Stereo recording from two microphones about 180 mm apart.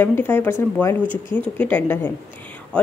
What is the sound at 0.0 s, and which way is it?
Speech, 10° left (ahead or behind).